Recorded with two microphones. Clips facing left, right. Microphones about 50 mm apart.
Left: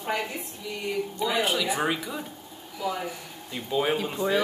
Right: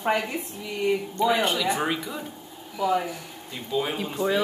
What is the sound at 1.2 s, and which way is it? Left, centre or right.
Speech, centre.